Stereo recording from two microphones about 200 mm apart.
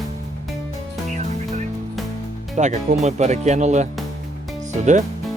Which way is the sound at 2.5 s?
35° right (ahead or behind).